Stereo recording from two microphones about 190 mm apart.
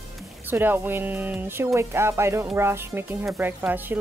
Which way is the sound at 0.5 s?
10° right (ahead or behind).